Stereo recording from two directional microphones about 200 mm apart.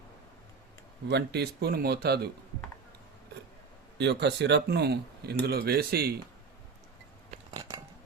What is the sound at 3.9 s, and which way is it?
Speech, 60° right (ahead or behind).